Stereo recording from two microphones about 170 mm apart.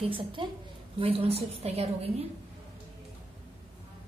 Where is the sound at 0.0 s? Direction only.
30° right (ahead or behind).